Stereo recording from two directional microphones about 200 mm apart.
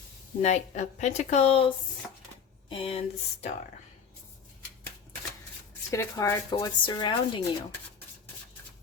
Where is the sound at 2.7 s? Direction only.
30° left (ahead or behind).